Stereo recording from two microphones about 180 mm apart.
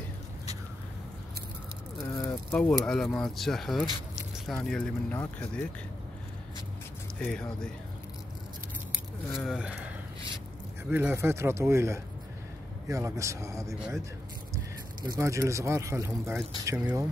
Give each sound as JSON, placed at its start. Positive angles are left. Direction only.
{"t": 2.1, "sound": "speech", "side_deg": 15}
{"t": 7.2, "sound": "speech", "side_deg": 10}
{"t": 9.4, "sound": "speech", "side_deg": -5}
{"t": 10.9, "sound": "speech", "side_deg": -10}
{"t": 15.0, "sound": "speech", "side_deg": -15}